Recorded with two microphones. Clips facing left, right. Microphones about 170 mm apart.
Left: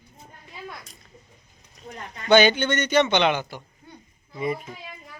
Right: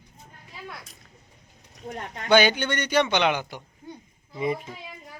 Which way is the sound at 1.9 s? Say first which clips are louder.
Right 4 dB; 50° right (ahead or behind).